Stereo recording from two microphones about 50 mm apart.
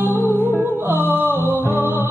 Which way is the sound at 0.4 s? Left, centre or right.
Right.